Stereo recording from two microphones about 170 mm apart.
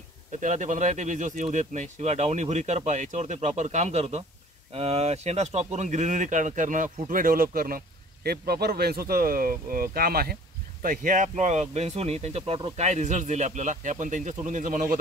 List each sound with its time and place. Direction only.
0.4 s speech: 45° right (ahead or behind)